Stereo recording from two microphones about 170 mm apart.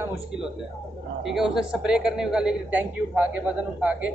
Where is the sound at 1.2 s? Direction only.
Centre (ahead or behind).